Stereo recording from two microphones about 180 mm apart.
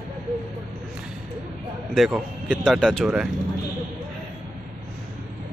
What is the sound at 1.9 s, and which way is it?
Speech, centre (ahead or behind).